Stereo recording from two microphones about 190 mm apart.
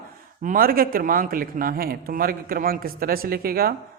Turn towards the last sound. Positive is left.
turn(degrees=-50)  # may be behind; listen again after turning